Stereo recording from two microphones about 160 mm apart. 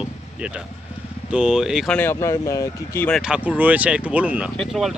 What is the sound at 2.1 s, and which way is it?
Speech, 20° left (ahead or behind).